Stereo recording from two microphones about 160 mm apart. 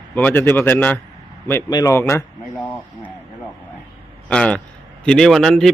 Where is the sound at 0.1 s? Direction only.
10° left (ahead or behind).